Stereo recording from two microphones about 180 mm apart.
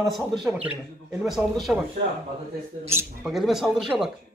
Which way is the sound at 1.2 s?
Centre (ahead or behind).